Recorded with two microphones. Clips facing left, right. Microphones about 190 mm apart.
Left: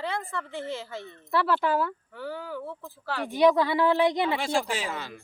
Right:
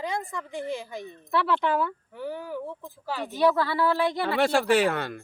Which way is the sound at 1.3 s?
Centre (ahead or behind).